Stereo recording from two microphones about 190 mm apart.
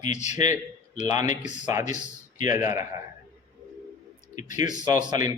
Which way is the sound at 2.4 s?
15° right (ahead or behind).